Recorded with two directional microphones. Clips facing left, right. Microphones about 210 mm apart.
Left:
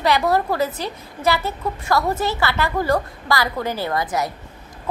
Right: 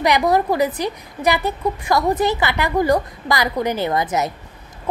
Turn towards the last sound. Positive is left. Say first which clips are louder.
# right 3 dB
turn(degrees=-20)  # may be behind; listen again after turning